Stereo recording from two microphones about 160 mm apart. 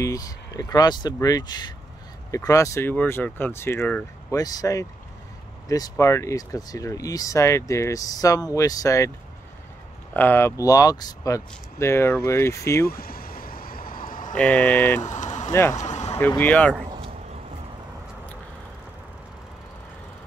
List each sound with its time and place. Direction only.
0.0 s speech: 20° left (ahead or behind)
10.1 s speech: 15° left (ahead or behind)
12.8 s a sound: 70° left (ahead or behind)
14.3 s speech: 10° left (ahead or behind)
15.0 s vehicle: 50° left (ahead or behind)
15.7 s a sound: 45° left (ahead or behind)
16.2 s speech: 10° left (ahead or behind)